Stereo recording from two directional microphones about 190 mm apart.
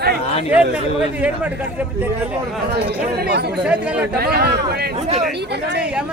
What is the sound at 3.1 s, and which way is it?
Speech, 55° right (ahead or behind).